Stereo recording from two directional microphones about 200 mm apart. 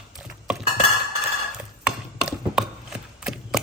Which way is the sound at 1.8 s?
5° right (ahead or behind).